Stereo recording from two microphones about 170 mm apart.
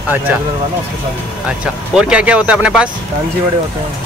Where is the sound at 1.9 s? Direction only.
5° right (ahead or behind).